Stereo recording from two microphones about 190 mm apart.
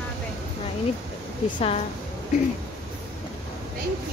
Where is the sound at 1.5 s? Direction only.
30° left (ahead or behind).